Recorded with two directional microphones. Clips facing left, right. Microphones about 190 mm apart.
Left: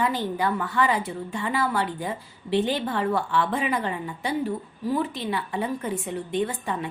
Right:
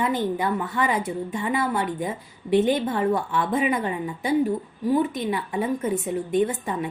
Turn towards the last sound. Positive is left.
turn(degrees=-25)  # may be behind; listen again after turning